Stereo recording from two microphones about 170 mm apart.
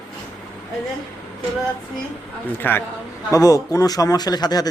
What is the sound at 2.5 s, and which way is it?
A man's voice, 10° left (ahead or behind).